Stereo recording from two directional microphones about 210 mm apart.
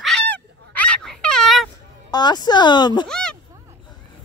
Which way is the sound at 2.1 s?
20° left (ahead or behind).